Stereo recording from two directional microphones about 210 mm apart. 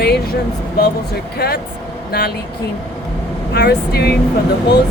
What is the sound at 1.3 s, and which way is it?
Speech, 50° left (ahead or behind).